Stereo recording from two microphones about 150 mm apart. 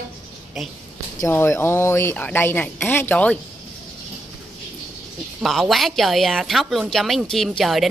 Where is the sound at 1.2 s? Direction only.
15° left (ahead or behind).